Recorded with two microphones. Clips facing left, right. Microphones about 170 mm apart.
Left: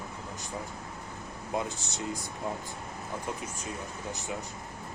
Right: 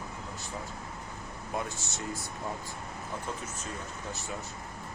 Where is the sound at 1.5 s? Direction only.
20° left (ahead or behind).